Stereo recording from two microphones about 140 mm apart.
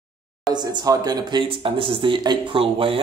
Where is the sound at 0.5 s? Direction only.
30° right (ahead or behind).